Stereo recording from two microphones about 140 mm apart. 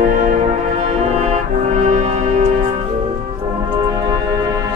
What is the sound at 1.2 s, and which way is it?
Music, 55° right (ahead or behind).